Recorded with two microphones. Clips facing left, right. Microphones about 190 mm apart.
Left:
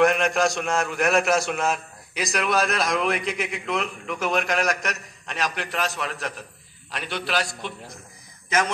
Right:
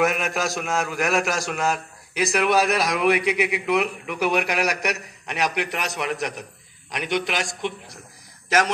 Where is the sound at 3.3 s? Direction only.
65° right (ahead or behind).